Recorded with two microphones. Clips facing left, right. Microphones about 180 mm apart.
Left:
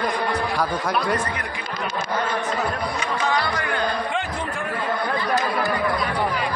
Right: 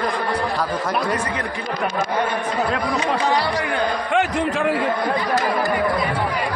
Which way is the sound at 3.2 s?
30° right (ahead or behind).